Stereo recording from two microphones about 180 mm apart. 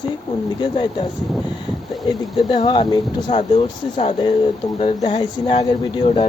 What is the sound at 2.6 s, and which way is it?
Speech, 25° left (ahead or behind).